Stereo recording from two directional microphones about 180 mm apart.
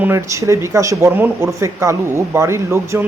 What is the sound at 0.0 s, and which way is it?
Speech, 15° right (ahead or behind).